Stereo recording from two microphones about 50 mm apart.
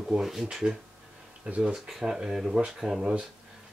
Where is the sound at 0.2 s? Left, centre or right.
Centre.